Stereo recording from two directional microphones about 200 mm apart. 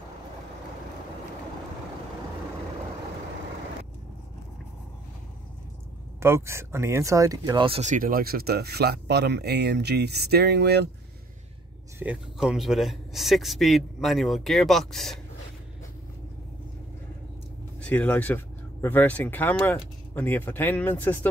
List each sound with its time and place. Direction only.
6.1 s speech: 15° right (ahead or behind); by 10.9 s 55° right (ahead or behind)
12.0 s a man's voice: 5° right (ahead or behind)
17.8 s speech: 5° left (ahead or behind)